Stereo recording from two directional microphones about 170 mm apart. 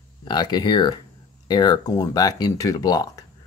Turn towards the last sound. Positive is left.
turn(degrees=20)  # may be behind; listen again after turning